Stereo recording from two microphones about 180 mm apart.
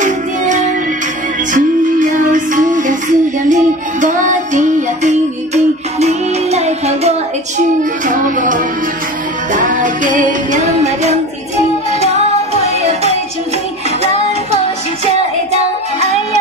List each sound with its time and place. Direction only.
0.0 s music: 45° right (ahead or behind)
4.0 s female singing: 45° right (ahead or behind)
8.0 s a sound: 45° right (ahead or behind)
9.5 s music: 45° right (ahead or behind)